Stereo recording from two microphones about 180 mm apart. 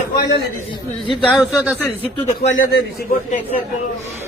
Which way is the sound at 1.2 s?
Centre (ahead or behind).